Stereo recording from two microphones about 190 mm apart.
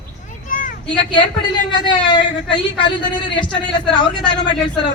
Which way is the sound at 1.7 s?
25° left (ahead or behind).